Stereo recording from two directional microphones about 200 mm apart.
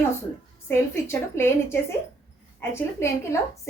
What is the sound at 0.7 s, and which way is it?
Speech, 10° left (ahead or behind).